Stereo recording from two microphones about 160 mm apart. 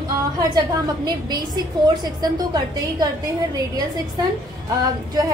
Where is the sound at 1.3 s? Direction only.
25° right (ahead or behind).